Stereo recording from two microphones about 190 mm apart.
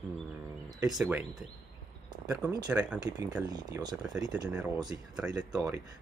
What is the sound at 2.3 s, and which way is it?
Speech, 15° right (ahead or behind).